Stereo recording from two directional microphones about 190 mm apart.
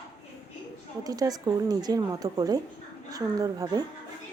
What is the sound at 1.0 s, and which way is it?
Speech, 20° right (ahead or behind).